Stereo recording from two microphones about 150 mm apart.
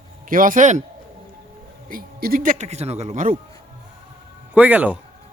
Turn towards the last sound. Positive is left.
turn(degrees=-10)  # may be behind; listen again after turning